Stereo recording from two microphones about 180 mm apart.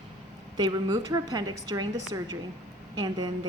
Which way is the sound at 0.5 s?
25° right (ahead or behind).